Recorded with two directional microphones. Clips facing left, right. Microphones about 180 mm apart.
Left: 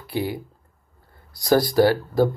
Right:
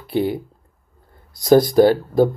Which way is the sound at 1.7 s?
20° right (ahead or behind).